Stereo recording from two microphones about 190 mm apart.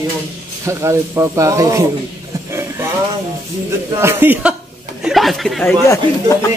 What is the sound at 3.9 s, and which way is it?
Speech, 15° right (ahead or behind).